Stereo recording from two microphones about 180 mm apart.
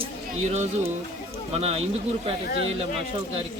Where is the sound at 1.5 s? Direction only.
35° right (ahead or behind).